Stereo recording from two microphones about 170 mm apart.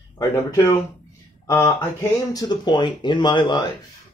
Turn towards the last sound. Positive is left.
turn(degrees=25)  # may be behind; listen again after turning